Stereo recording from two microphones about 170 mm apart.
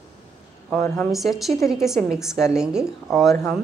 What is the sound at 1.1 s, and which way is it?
A woman's voice, centre (ahead or behind).